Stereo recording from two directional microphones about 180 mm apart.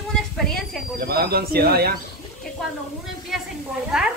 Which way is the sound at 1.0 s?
60° right (ahead or behind).